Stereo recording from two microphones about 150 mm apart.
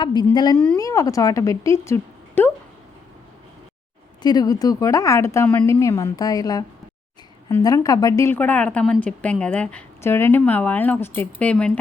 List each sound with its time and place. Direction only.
0.0 s a woman's voice: 30° left (ahead or behind)
0.5 s a woman's voice: 10° left (ahead or behind)
0.8 s speech: 20° left (ahead or behind)
4.2 s a woman's voice: 25° left (ahead or behind); by 11.8 s 10° left (ahead or behind)